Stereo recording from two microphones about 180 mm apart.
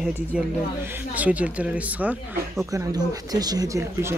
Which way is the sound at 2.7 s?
20° right (ahead or behind).